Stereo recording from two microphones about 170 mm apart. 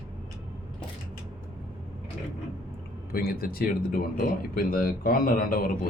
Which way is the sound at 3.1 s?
60° left (ahead or behind).